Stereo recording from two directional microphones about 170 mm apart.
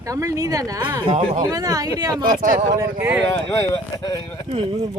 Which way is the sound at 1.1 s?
45° right (ahead or behind).